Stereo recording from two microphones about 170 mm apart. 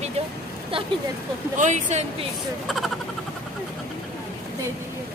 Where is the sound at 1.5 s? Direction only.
45° right (ahead or behind).